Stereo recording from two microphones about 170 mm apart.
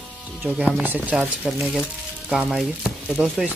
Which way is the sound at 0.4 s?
10° right (ahead or behind).